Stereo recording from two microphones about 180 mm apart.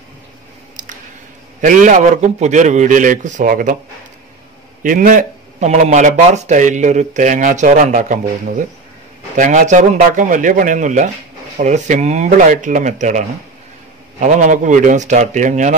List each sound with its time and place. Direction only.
1.6 s speech: 45° right (ahead or behind)
4.8 s speech: 50° right (ahead or behind)
14.2 s speech: 45° right (ahead or behind)